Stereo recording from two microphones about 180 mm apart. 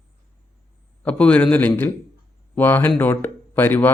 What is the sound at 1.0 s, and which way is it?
Speech, 5° left (ahead or behind).